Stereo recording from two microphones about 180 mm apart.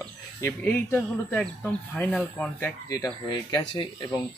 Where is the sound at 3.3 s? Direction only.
25° left (ahead or behind).